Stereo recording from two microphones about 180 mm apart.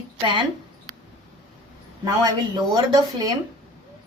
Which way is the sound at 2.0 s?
20° right (ahead or behind).